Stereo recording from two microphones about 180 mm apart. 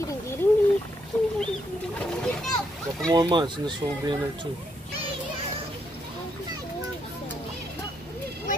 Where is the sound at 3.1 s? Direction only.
25° right (ahead or behind).